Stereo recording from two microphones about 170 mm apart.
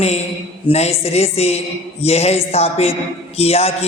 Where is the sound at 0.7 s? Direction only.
40° left (ahead or behind).